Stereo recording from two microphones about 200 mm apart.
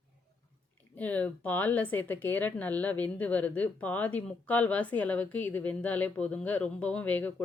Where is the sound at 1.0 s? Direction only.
5° left (ahead or behind).